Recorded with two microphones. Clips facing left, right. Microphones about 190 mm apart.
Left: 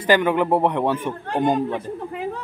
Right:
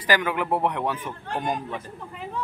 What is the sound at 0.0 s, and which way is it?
A man's voice, 25° left (ahead or behind).